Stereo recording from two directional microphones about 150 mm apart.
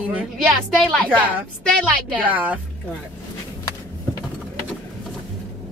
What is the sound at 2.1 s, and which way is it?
Speech, 10° right (ahead or behind).